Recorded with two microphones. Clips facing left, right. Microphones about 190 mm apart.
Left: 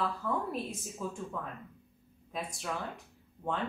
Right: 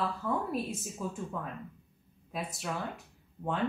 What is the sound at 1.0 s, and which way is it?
Speech, centre (ahead or behind).